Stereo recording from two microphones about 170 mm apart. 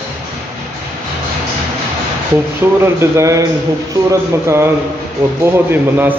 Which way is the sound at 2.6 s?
15° right (ahead or behind).